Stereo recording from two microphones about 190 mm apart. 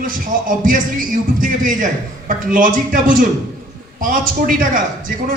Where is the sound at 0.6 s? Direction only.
45° right (ahead or behind).